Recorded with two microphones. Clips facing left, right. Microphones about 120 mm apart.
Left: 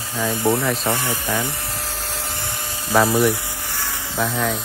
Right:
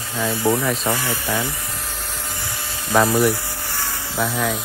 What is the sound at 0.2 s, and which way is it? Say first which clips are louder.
Speech: even; 15° left (ahead or behind).